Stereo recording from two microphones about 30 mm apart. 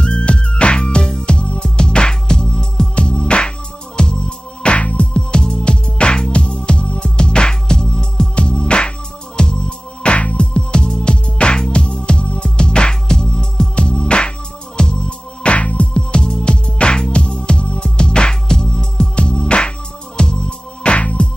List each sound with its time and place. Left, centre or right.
0.0 s music: left
4.7 s music: left
5.1 s music: left
10.1 s music: left
16.6 s music: left